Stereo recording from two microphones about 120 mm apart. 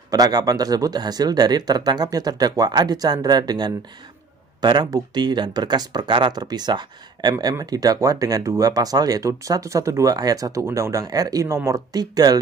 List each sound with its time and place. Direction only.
0.1 s speech: 35° right (ahead or behind)